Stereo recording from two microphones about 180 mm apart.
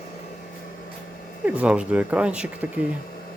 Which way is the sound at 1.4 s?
5° right (ahead or behind).